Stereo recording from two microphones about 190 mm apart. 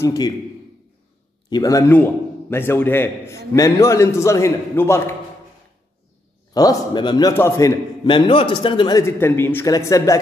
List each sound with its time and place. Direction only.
0.0 s a man's voice: 20° left (ahead or behind)
1.5 s speech: 20° left (ahead or behind)
6.5 s a man's voice: 20° left (ahead or behind)
8.1 s speech: 25° left (ahead or behind)